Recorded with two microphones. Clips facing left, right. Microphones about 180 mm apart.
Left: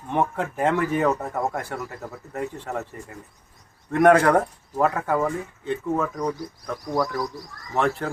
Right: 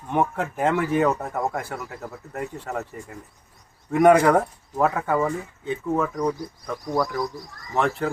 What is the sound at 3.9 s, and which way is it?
Speech, 5° right (ahead or behind).